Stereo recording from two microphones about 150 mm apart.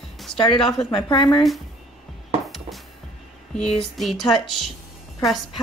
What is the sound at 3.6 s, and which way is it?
Speech, centre (ahead or behind).